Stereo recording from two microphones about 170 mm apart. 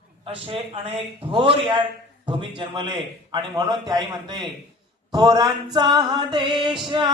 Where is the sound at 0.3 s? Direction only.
35° right (ahead or behind).